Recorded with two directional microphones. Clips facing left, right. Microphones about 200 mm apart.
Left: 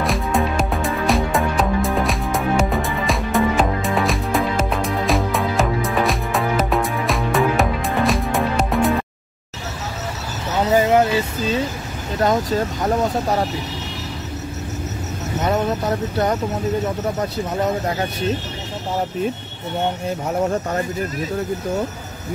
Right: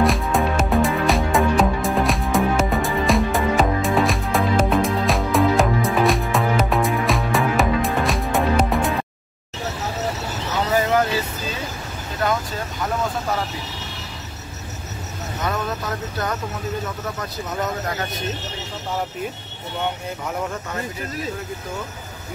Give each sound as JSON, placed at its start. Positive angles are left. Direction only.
{"t": 0.0, "sound": "music", "side_deg": 0}
{"t": 10.7, "sound": "a sound", "side_deg": 25}
{"t": 12.2, "sound": "speech", "side_deg": 35}
{"t": 15.4, "sound": "speech", "side_deg": 25}
{"t": 20.2, "sound": "speech", "side_deg": 35}